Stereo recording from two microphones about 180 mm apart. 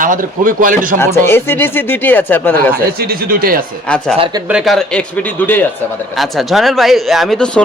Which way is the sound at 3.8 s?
5° left (ahead or behind).